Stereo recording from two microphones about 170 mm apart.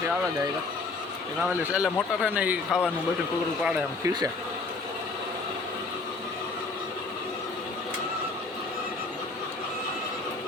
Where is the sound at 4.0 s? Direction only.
20° right (ahead or behind).